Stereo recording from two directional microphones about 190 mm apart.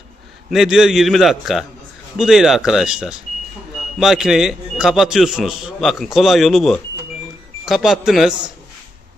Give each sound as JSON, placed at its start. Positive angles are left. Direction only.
{"t": 0.5, "sound": "a man's voice", "side_deg": 0}